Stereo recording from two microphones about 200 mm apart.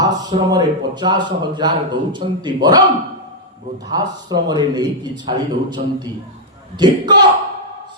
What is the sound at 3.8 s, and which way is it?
A man's voice, 20° right (ahead or behind).